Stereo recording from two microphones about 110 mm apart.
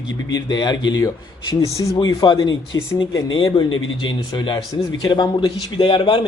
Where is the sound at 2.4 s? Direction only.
30° left (ahead or behind).